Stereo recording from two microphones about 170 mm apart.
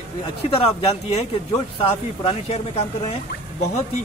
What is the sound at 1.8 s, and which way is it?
Speech, 35° left (ahead or behind).